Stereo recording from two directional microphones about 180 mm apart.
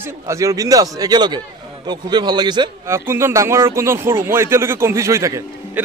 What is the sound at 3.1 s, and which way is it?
Speech, 15° right (ahead or behind).